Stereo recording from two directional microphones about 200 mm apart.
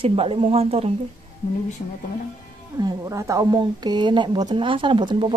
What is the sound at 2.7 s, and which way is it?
Speech, 20° right (ahead or behind).